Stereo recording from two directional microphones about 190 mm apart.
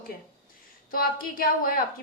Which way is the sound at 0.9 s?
50° left (ahead or behind).